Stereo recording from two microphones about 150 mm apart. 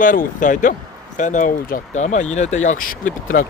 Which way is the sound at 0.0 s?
65° left (ahead or behind).